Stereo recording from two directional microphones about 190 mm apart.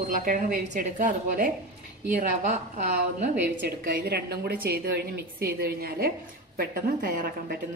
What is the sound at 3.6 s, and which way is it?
A woman's voice, 55° right (ahead or behind).